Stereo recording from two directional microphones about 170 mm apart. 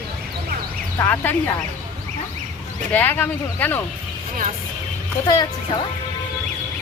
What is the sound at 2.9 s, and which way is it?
Speech, 10° left (ahead or behind).